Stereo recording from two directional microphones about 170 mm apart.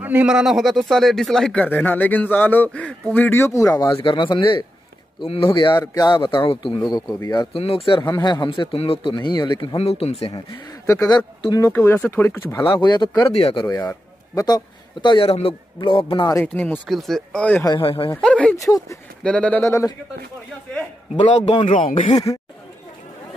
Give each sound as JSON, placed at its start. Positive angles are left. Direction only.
{"t": 0.0, "sound": "speech", "side_deg": -10}
{"t": 7.5, "sound": "speech", "side_deg": 35}
{"t": 10.3, "sound": "speech", "side_deg": 25}
{"t": 12.6, "sound": "a man's voice", "side_deg": 25}
{"t": 16.3, "sound": "speech", "side_deg": 10}
{"t": 17.8, "sound": "a man's voice", "side_deg": 30}
{"t": 18.1, "sound": "speech", "side_deg": 5}
{"t": 18.6, "sound": "speech", "side_deg": 20}
{"t": 19.2, "sound": "speech", "side_deg": 5}
{"t": 21.2, "sound": "a man's voice", "side_deg": 30}
{"t": 22.1, "sound": "speech", "side_deg": 20}